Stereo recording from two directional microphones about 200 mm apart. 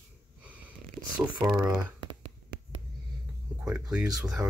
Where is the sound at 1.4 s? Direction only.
20° right (ahead or behind).